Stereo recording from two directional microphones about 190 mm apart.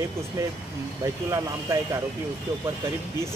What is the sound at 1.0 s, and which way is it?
Speech, 15° right (ahead or behind).